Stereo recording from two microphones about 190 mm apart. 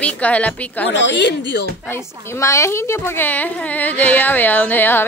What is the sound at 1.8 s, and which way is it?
A woman's voice, 15° left (ahead or behind).